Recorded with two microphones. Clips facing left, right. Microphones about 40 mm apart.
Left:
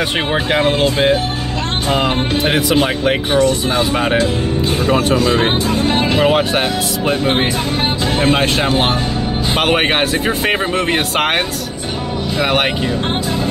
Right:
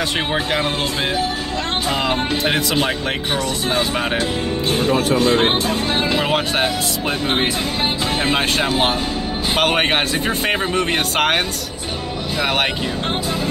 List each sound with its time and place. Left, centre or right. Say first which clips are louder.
0.0 s speech: left 3 dB; left
1.9 s speech: left 5 dB; left
3.3 s speech: left 6 dB; left
3.9 s speech: left 5 dB; centre
4.8 s speech: left 2 dB; left
6.2 s speech: left 6 dB; centre
8.3 s speech: left 4 dB; centre